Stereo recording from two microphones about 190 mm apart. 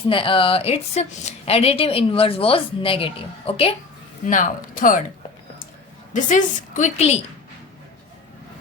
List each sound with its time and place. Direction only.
0.1 s a woman's voice: 25° left (ahead or behind)
4.3 s speech: 40° left (ahead or behind)
6.1 s a woman's voice: 40° left (ahead or behind)